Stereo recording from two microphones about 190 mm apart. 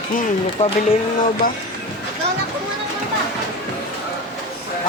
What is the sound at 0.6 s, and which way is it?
Speech, 35° left (ahead or behind).